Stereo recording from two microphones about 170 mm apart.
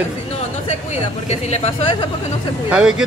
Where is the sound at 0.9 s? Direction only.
40° left (ahead or behind).